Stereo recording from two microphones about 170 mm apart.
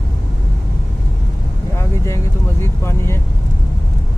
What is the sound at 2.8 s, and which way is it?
Speech, 15° left (ahead or behind).